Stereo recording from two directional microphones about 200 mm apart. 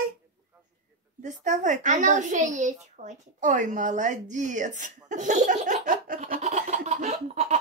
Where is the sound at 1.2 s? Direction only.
35° right (ahead or behind).